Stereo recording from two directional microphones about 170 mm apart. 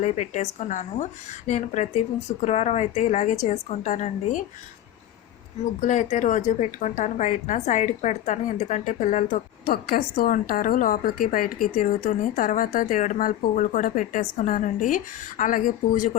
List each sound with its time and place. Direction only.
0.0 s a woman's voice: 45° left (ahead or behind)
5.8 s a woman's voice: 45° left (ahead or behind)
9.7 s a woman's voice: 60° left (ahead or behind)